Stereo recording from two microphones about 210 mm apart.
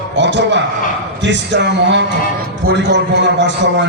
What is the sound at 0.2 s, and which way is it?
A man's voice, 55° right (ahead or behind).